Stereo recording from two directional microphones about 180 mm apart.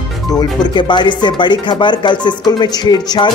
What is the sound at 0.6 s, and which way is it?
Speech, 25° left (ahead or behind).